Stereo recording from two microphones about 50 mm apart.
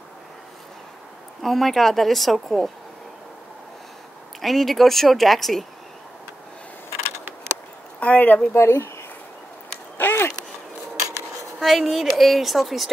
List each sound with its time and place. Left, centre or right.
1.4 s a woman's voice: centre
4.4 s a woman's voice: centre
8.0 s speech: left
8.5 s speech: left
9.9 s a sound: left
11.6 s a woman's voice: centre